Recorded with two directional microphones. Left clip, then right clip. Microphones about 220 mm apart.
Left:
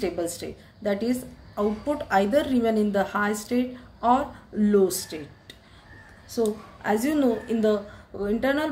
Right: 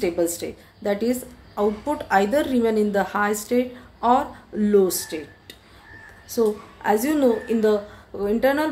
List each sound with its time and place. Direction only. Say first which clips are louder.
0.0 s a woman's voice: right 5 dB; centre (ahead or behind)